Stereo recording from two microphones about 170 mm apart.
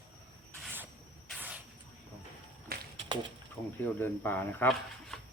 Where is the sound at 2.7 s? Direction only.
60° right (ahead or behind).